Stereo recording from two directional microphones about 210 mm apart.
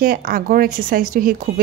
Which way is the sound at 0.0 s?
45° right (ahead or behind).